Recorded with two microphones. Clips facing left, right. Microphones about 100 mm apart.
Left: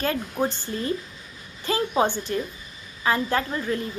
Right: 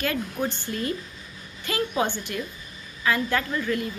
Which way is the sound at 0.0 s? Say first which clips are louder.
Left 2 dB; 30° left (ahead or behind).